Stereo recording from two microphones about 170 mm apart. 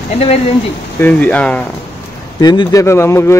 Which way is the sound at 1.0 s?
10° left (ahead or behind).